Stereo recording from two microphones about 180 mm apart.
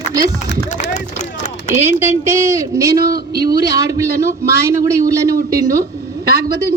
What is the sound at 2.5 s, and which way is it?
A man's voice, 20° right (ahead or behind).